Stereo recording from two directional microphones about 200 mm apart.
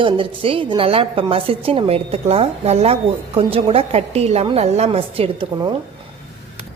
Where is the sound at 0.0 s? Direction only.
25° right (ahead or behind).